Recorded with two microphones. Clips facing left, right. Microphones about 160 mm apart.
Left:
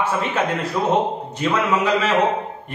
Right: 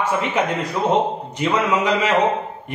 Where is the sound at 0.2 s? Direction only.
15° right (ahead or behind).